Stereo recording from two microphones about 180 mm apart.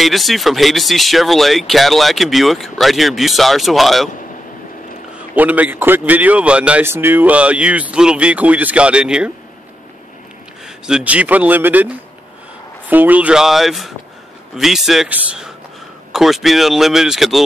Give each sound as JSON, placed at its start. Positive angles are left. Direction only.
{"t": 0.0, "sound": "speech", "side_deg": 0}
{"t": 5.3, "sound": "a man's voice", "side_deg": -10}
{"t": 10.9, "sound": "a man's voice", "side_deg": -5}
{"t": 12.9, "sound": "speech", "side_deg": -10}